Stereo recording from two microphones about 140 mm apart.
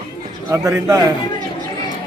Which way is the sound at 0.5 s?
20° right (ahead or behind).